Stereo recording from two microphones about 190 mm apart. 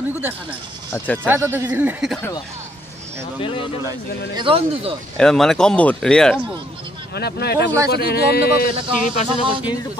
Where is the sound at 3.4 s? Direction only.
25° left (ahead or behind).